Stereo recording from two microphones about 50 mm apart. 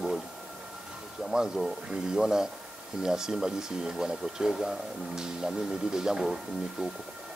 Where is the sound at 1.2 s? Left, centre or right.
Centre.